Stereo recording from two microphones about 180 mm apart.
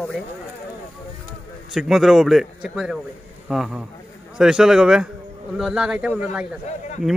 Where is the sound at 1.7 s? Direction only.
Centre (ahead or behind).